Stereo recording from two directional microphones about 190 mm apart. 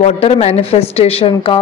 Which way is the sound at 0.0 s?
35° left (ahead or behind).